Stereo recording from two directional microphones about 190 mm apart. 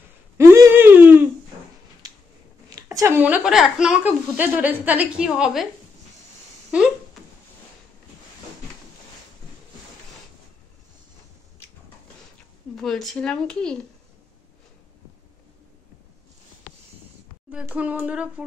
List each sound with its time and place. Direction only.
0.4 s whimper: 15° right (ahead or behind)
2.0 s a sound: 20° right (ahead or behind)
2.7 s a woman's voice: 15° right (ahead or behind)
6.7 s a sound: 5° right (ahead or behind)
12.7 s speech: centre (ahead or behind)
17.5 s a woman's voice: 5° right (ahead or behind)